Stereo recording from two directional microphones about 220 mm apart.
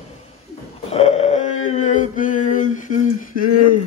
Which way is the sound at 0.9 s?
30° left (ahead or behind).